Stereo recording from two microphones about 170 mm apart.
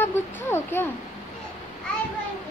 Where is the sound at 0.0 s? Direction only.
15° left (ahead or behind).